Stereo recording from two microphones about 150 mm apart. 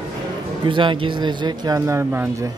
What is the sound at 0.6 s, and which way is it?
Speech, 35° right (ahead or behind).